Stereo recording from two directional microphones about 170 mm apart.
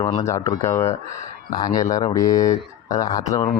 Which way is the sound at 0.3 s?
20° left (ahead or behind).